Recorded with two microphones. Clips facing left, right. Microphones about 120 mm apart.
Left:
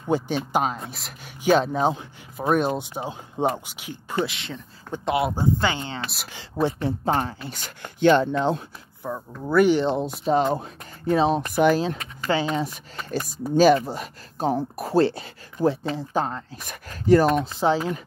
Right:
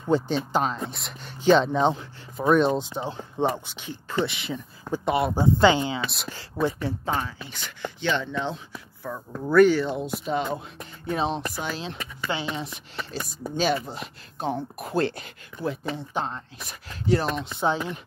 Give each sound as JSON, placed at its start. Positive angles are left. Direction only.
{"t": 0.1, "sound": "speech", "side_deg": 10}
{"t": 4.3, "sound": "speech", "side_deg": -5}
{"t": 5.3, "sound": "speech", "side_deg": -20}
{"t": 6.3, "sound": "speech", "side_deg": 20}
{"t": 7.1, "sound": "speech", "side_deg": 45}
{"t": 9.0, "sound": "speech", "side_deg": 20}
{"t": 9.4, "sound": "speech", "side_deg": 5}
{"t": 9.7, "sound": "speech", "side_deg": 25}
{"t": 9.9, "sound": "speech", "side_deg": 35}
{"t": 11.5, "sound": "speech", "side_deg": 60}
{"t": 11.8, "sound": "speech", "side_deg": 40}
{"t": 17.6, "sound": "speech", "side_deg": 30}